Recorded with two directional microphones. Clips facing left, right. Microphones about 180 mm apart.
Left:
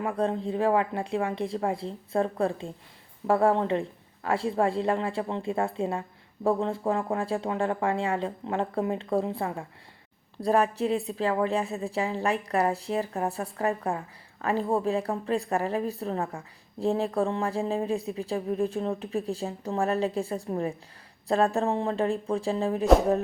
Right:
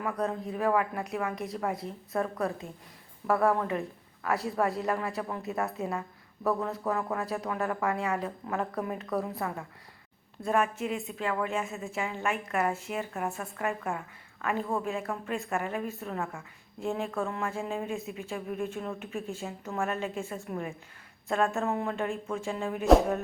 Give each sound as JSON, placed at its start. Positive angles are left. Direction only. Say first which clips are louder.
{"t": 0.0, "sound": "a woman's voice", "louder": "left 4 dB", "side_deg": 30}